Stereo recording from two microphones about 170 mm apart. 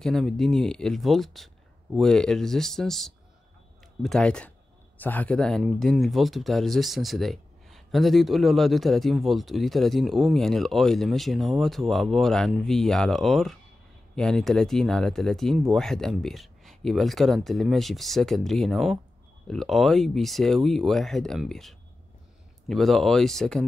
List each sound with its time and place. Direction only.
0.0 s speech: 5° left (ahead or behind)